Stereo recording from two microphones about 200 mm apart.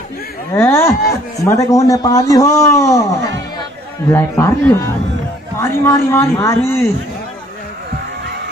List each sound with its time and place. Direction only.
0.5 s a man's voice: 10° left (ahead or behind)